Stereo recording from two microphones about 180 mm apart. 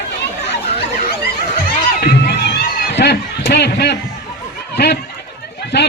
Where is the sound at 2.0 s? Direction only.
65° left (ahead or behind).